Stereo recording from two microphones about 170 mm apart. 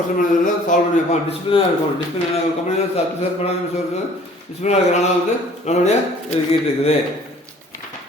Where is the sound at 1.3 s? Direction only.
30° left (ahead or behind).